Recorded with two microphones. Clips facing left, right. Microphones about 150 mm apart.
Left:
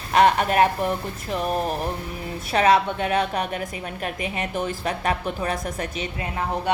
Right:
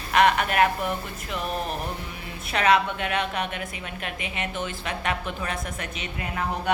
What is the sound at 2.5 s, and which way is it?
Music, 30° left (ahead or behind).